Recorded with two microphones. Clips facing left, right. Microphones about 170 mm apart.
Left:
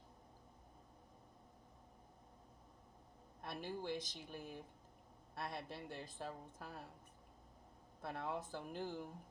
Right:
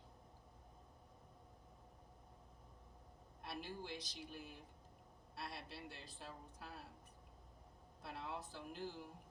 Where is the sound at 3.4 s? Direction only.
50° left (ahead or behind).